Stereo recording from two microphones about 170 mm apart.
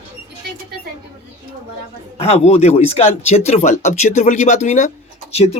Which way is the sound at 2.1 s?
40° left (ahead or behind).